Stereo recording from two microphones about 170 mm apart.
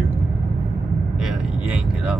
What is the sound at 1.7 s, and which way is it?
Speech, 5° right (ahead or behind).